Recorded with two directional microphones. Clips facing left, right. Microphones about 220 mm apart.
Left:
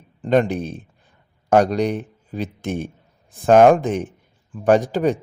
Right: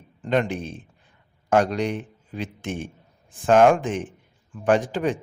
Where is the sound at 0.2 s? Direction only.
40° left (ahead or behind).